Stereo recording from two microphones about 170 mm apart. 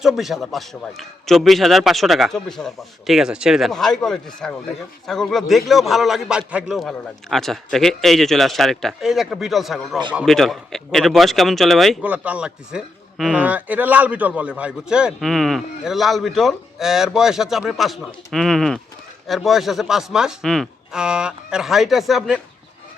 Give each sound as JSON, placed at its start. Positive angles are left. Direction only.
{"t": 0.0, "sound": "a man's voice", "side_deg": 0}